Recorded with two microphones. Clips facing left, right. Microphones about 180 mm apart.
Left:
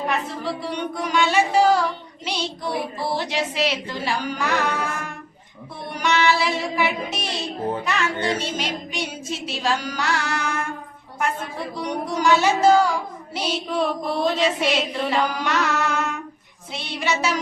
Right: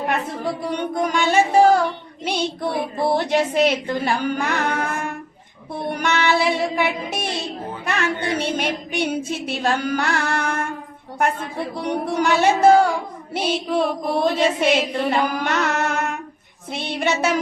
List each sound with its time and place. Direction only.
0.7 s music: 50° right (ahead or behind)
2.2 s speech: 55° right (ahead or behind)
5.9 s child singing: 55° right (ahead or behind)
14.3 s speech: 50° right (ahead or behind)